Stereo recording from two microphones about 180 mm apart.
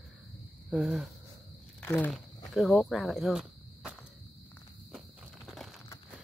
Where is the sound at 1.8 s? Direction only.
10° left (ahead or behind).